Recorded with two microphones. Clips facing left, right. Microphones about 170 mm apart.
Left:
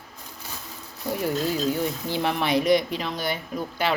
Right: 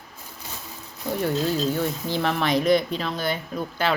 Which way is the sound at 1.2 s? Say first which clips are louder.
Right 1 dB; 10° left (ahead or behind).